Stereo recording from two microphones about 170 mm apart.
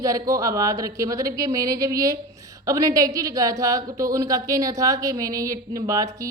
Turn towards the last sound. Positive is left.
turn(degrees=-20)  # may be behind; listen again after turning